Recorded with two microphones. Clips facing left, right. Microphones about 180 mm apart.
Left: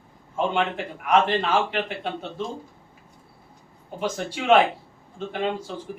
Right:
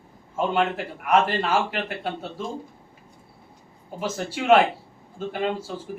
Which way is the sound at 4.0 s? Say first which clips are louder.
Even; 5° right (ahead or behind).